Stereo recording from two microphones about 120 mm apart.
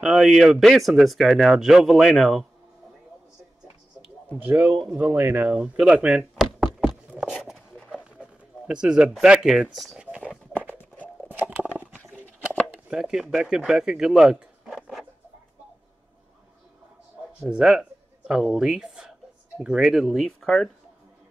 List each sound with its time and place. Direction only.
0.0 s speech: 5° right (ahead or behind)
4.4 s speech: 15° right (ahead or behind)
6.4 s knock: 5° left (ahead or behind)
7.1 s a sound: 10° right (ahead or behind)
8.0 s speech: 10° right (ahead or behind)
10.7 s a sound: 15° left (ahead or behind)
12.0 s bird: 10° left (ahead or behind)
12.7 s speech: 5° right (ahead or behind)
17.4 s speech: 5° right (ahead or behind)